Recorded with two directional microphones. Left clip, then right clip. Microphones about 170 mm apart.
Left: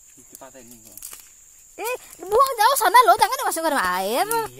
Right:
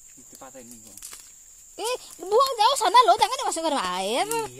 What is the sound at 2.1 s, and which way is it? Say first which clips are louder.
Speech: left 3 dB; 15° left (ahead or behind).